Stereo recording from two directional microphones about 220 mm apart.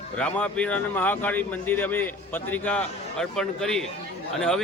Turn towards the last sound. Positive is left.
turn(degrees=0)  # may be behind; listen again after turning